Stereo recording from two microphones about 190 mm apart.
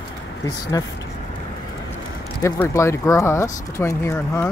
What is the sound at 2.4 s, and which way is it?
Speech, 15° left (ahead or behind).